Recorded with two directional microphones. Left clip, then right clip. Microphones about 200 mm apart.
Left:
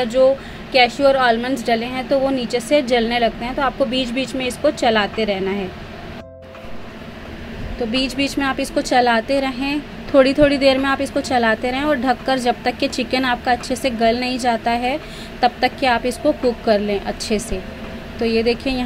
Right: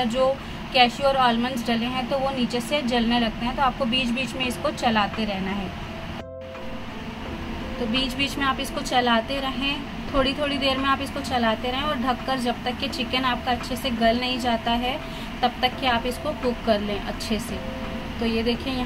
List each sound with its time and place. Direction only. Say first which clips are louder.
0.0 s a woman's voice: left 7 dB; 20° left (ahead or behind)
7.9 s a woman's voice: left 4 dB; 25° left (ahead or behind)
18.2 s a woman's voice: left 8 dB; 30° left (ahead or behind)